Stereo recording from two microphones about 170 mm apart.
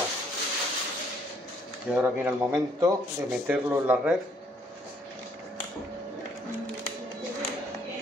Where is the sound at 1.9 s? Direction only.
10° right (ahead or behind).